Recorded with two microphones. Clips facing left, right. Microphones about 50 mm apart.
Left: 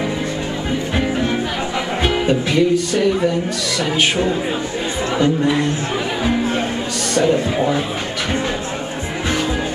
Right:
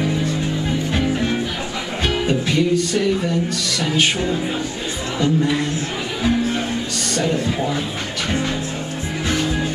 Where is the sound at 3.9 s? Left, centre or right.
Centre.